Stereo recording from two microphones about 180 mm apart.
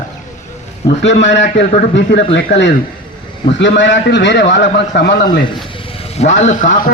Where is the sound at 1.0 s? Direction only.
85° left.